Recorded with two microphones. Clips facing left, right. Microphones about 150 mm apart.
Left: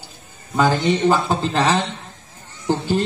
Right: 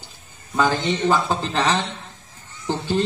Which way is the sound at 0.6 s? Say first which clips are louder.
Left 3 dB; 15° left (ahead or behind).